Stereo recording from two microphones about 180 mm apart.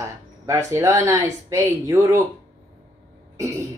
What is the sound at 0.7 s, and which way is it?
Speech, 15° right (ahead or behind).